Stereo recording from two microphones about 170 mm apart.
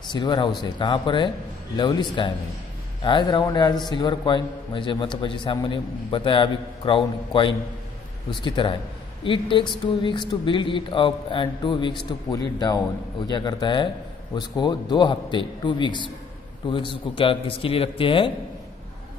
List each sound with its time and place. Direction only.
0.1 s a man's voice: 25° left (ahead or behind)